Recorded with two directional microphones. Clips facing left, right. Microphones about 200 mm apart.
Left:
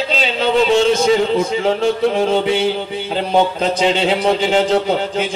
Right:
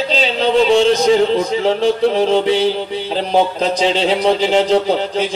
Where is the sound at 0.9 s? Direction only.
35° right (ahead or behind).